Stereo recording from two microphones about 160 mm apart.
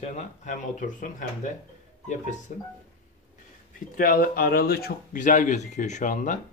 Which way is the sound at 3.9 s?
65° left (ahead or behind).